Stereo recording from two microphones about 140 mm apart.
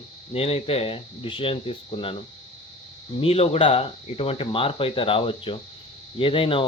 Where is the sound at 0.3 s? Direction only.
45° left (ahead or behind).